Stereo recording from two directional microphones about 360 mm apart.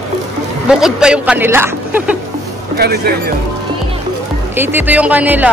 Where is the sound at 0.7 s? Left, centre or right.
Centre.